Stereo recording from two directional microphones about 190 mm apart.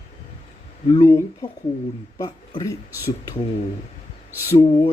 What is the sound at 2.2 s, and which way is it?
Speech, 20° left (ahead or behind).